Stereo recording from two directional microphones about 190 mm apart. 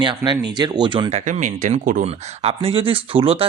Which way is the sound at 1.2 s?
40° right (ahead or behind).